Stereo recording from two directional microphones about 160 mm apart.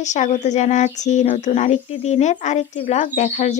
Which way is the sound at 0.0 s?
50° left (ahead or behind).